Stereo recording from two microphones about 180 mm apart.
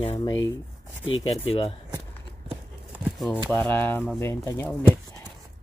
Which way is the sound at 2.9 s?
Centre (ahead or behind).